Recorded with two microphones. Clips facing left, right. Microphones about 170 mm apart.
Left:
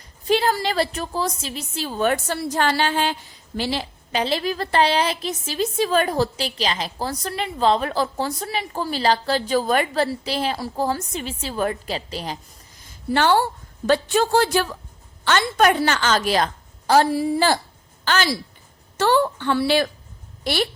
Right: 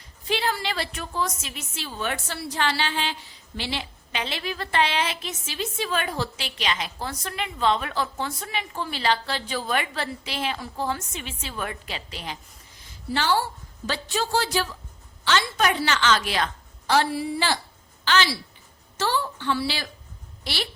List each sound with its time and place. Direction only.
0.3 s a woman's voice: 40° left (ahead or behind)
13.1 s a woman's voice: 55° left (ahead or behind)
18.9 s a woman's voice: 60° left (ahead or behind)